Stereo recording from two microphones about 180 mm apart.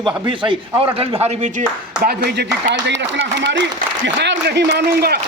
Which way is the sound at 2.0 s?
65° right (ahead or behind).